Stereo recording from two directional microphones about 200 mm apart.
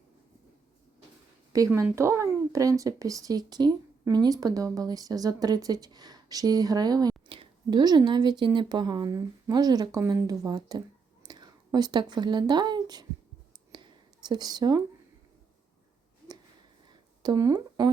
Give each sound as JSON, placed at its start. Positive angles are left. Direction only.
{"t": 1.5, "sound": "speech", "side_deg": -15}
{"t": 14.3, "sound": "speech", "side_deg": -20}
{"t": 17.2, "sound": "speech", "side_deg": -15}